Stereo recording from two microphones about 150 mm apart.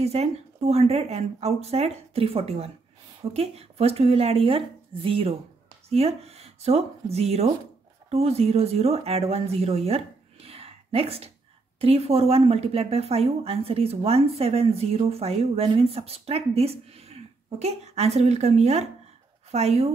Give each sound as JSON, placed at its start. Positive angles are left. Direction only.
{"t": 0.0, "sound": "a woman's voice", "side_deg": -45}